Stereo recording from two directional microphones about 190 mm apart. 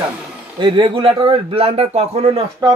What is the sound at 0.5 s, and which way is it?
A man's voice, 25° right (ahead or behind).